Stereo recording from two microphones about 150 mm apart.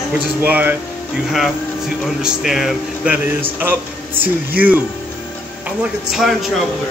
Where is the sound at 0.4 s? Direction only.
10° right (ahead or behind).